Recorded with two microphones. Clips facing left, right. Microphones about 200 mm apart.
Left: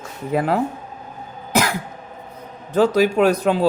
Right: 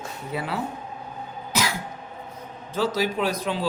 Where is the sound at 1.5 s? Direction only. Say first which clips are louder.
Left 7 dB; 55° left (ahead or behind).